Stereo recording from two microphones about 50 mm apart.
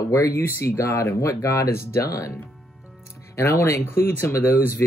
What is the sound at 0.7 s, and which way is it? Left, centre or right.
Speech, left.